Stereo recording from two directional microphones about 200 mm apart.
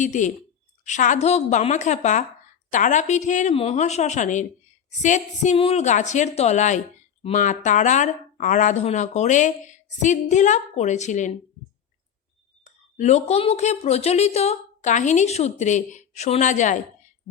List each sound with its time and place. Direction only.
0.0 s a woman's voice: 40° left (ahead or behind)
13.0 s a woman's voice: 35° left (ahead or behind)